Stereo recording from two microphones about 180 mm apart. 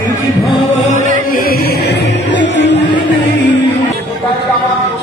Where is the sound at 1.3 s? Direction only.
55° left (ahead or behind); by 2.7 s 80° left.